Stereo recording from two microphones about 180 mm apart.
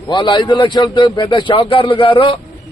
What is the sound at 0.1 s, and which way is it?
Speech, 25° left (ahead or behind).